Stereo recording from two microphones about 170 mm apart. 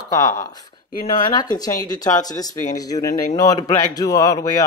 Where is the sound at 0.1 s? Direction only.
15° left (ahead or behind).